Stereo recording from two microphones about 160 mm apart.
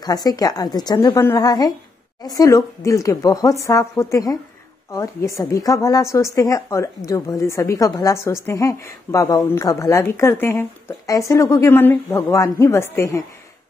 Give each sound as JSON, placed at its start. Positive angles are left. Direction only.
{"t": 0.0, "sound": "a woman's voice", "side_deg": 25}